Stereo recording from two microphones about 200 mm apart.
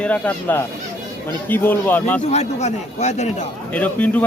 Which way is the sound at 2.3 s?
35° left (ahead or behind).